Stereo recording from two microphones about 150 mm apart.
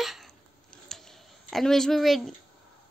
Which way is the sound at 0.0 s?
Centre (ahead or behind).